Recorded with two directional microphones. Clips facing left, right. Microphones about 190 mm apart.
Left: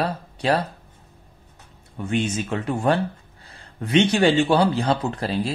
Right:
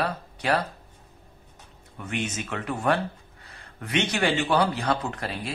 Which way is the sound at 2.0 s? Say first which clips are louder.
Left 7 dB; 30° left (ahead or behind).